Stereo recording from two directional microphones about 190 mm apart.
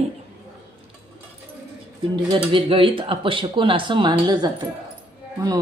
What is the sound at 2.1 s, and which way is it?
Speech, 25° right (ahead or behind).